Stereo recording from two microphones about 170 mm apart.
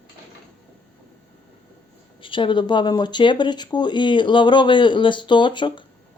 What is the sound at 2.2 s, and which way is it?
Speech, 30° left (ahead or behind).